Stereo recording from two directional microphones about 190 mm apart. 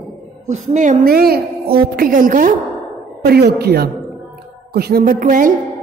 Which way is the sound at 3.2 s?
55° right (ahead or behind).